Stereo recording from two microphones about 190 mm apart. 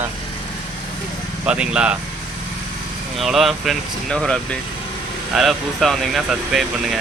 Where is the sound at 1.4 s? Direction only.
5° right (ahead or behind).